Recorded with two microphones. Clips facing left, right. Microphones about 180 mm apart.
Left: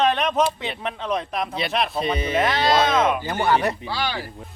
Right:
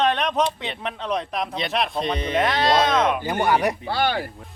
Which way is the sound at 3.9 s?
55° right (ahead or behind).